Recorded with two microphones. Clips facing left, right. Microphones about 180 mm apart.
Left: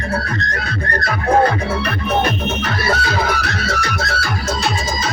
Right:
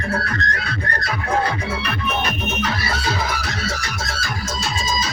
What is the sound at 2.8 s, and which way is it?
Music, 65° left (ahead or behind).